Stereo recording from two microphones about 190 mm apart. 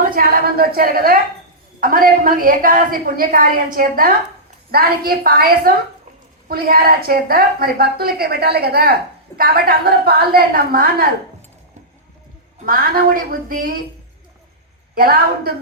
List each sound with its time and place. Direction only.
0.1 s a woman's voice: 50° right (ahead or behind)
12.5 s a woman's voice: 50° right (ahead or behind)
14.9 s a woman's voice: 50° right (ahead or behind)